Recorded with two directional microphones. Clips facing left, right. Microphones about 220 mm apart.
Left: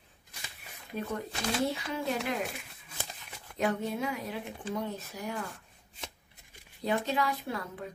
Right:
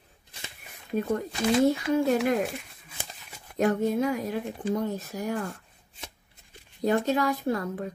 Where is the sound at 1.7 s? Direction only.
45° right (ahead or behind).